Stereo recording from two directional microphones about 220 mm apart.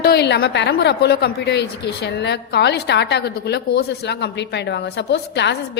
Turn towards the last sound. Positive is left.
turn(degrees=50)  # may be behind; listen again after turning